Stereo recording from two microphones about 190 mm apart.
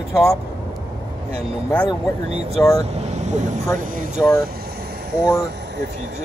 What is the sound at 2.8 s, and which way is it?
Speech, 35° right (ahead or behind).